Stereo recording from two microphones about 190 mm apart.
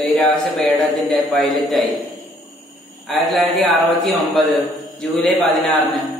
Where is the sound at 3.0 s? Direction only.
Centre (ahead or behind).